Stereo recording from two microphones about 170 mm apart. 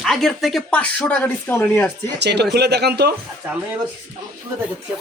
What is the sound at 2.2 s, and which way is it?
Speech, 85° right.